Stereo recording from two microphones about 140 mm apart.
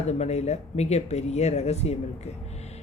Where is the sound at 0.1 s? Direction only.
50° left (ahead or behind).